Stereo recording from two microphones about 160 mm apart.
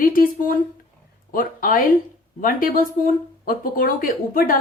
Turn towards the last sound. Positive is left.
turn(degrees=60)  # may be behind; listen again after turning